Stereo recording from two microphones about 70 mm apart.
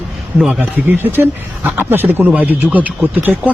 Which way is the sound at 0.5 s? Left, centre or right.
Right.